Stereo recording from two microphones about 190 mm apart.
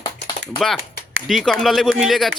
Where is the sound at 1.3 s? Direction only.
Centre (ahead or behind).